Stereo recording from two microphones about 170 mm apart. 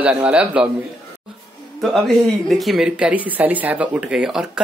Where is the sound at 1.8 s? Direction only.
Centre (ahead or behind).